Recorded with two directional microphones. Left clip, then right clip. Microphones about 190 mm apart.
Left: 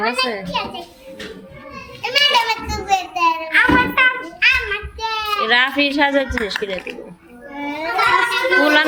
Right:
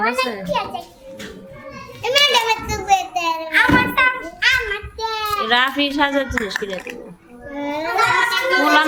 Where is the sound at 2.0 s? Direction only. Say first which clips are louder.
Even; 30° right (ahead or behind).